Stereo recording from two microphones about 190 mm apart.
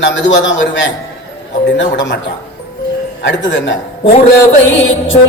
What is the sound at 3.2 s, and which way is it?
Speech, 75° left (ahead or behind).